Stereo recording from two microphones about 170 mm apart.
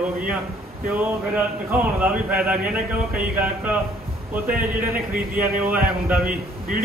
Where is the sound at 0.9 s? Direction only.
10° right (ahead or behind).